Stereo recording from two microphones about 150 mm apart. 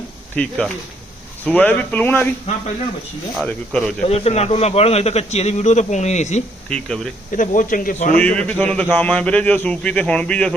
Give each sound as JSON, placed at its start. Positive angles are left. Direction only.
{"t": 0.3, "sound": "a man's voice", "side_deg": 5}
{"t": 3.3, "sound": "speech", "side_deg": 5}
{"t": 4.0, "sound": "a man's voice", "side_deg": 45}
{"t": 6.7, "sound": "speech", "side_deg": 5}
{"t": 7.3, "sound": "speech", "side_deg": 60}
{"t": 8.1, "sound": "a man's voice", "side_deg": 10}